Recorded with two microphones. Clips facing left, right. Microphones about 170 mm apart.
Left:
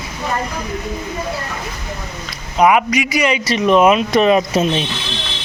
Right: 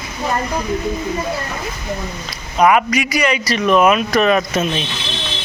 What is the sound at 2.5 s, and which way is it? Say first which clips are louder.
A man's voice: even; 15° left (ahead or behind).